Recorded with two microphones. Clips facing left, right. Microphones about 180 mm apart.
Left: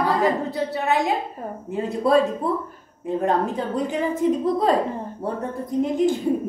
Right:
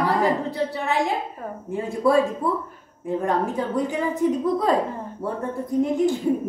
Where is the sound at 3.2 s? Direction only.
20° left (ahead or behind).